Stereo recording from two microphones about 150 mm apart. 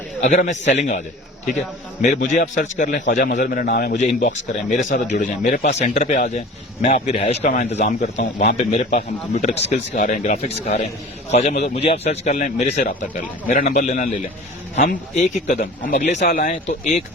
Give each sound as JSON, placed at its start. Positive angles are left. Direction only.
{"t": 0.2, "sound": "speech", "side_deg": 55}
{"t": 4.0, "sound": "speech", "side_deg": 55}
{"t": 5.1, "sound": "a man's voice", "side_deg": 70}
{"t": 8.4, "sound": "speech", "side_deg": 45}